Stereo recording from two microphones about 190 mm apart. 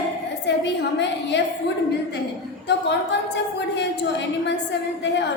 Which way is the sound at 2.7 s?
65° left (ahead or behind).